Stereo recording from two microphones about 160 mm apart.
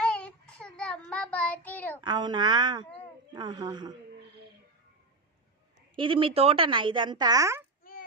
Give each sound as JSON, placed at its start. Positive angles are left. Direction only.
{"t": 0.0, "sound": "child singing", "side_deg": 5}
{"t": 2.0, "sound": "speech", "side_deg": -25}
{"t": 6.0, "sound": "speech", "side_deg": -35}